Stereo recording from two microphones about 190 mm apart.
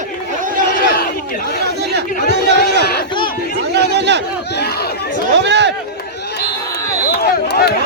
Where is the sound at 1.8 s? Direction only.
60° right (ahead or behind).